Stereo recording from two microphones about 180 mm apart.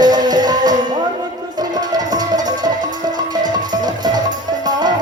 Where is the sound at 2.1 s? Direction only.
20° right (ahead or behind).